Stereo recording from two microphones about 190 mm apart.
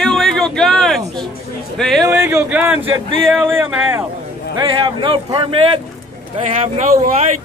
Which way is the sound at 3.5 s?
10° right (ahead or behind).